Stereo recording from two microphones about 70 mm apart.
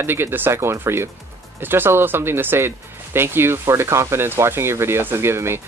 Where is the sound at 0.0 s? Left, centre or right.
Right.